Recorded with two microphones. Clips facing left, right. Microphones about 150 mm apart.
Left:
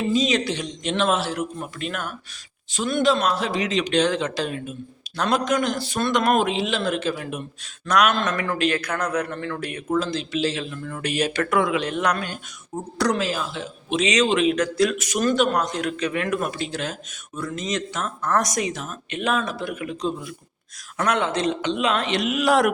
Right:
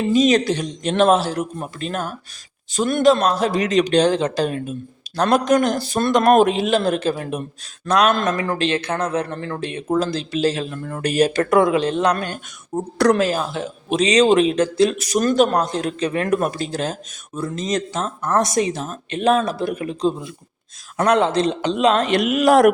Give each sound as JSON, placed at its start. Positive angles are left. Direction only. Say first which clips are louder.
{"t": 0.1, "sound": "a man's voice", "louder": "right 8 dB", "side_deg": -55}
{"t": 10.0, "sound": "speech", "louder": "right 4 dB", "side_deg": -40}
{"t": 12.1, "sound": "speech", "louder": "right 4 dB", "side_deg": -50}